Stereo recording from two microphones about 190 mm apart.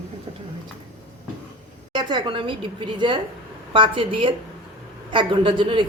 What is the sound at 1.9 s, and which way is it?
A woman's voice, 25° right (ahead or behind).